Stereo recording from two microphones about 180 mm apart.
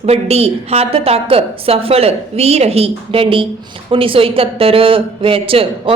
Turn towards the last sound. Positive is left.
turn(degrees=-30)  # may be behind; listen again after turning